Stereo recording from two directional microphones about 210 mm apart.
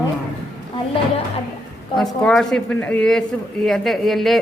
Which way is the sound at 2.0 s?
Centre (ahead or behind).